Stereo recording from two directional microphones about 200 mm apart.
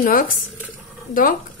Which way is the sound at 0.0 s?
45° left (ahead or behind).